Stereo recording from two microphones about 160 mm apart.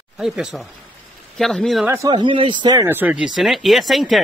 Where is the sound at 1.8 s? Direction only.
15° right (ahead or behind).